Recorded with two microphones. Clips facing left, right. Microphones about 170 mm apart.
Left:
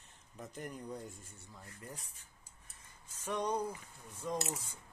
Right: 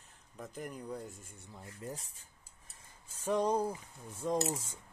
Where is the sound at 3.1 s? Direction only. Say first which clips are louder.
Right 5 dB; 30° right (ahead or behind).